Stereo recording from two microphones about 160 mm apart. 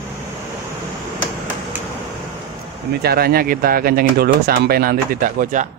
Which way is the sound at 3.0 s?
75° right (ahead or behind).